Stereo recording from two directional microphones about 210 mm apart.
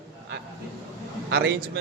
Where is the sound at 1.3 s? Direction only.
50° right (ahead or behind).